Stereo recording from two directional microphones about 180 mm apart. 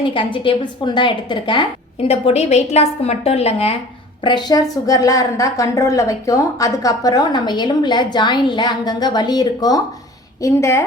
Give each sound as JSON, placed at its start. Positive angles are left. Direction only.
{"t": 0.1, "sound": "a woman's voice", "side_deg": 25}